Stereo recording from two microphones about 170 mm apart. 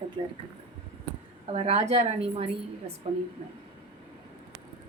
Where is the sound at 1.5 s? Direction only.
35° right (ahead or behind).